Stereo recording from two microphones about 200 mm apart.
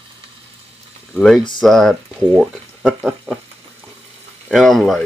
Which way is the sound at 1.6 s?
Centre (ahead or behind).